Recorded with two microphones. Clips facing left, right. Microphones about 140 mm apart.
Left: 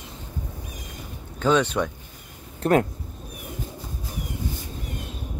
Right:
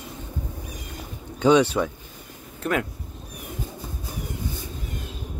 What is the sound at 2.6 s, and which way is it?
Speech, 40° left (ahead or behind).